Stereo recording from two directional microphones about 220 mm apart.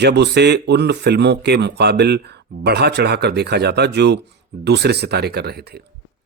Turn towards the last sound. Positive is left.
turn(degrees=-45)  # may be behind; listen again after turning